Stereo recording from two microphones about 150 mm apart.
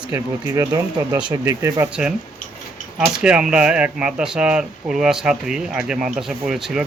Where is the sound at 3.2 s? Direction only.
5° right (ahead or behind).